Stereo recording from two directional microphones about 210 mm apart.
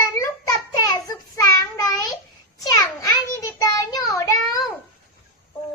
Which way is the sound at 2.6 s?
15° left (ahead or behind).